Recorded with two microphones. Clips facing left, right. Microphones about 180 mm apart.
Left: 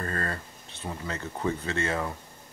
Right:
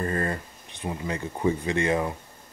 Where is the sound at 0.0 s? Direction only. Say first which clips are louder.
Right 5 dB; 15° right (ahead or behind).